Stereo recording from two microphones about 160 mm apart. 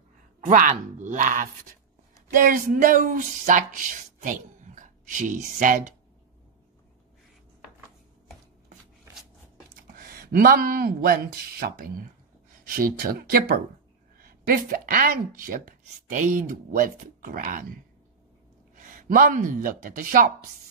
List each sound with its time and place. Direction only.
0.4 s speech: 55° right (ahead or behind)
9.9 s speech: 75° right (ahead or behind); by 17.6 s 55° right (ahead or behind)
18.8 s speech: 55° right (ahead or behind)